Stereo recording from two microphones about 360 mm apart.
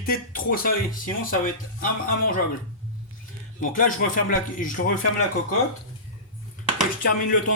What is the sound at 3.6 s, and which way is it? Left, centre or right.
Speech, left.